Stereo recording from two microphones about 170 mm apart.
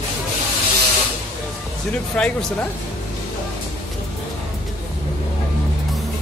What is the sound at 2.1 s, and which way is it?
Speech, 5° left (ahead or behind).